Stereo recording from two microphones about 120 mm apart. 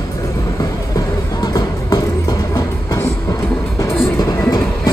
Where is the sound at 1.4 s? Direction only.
30° left (ahead or behind).